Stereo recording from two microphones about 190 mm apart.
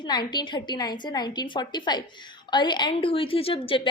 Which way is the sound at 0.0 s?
20° left (ahead or behind).